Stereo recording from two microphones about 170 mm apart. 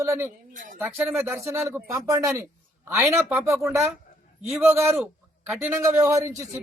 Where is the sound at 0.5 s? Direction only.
50° right (ahead or behind).